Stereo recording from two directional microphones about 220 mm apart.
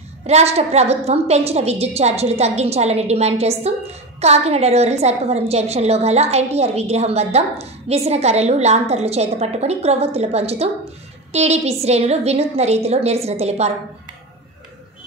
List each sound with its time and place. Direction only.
0.3 s a woman's voice: 30° right (ahead or behind)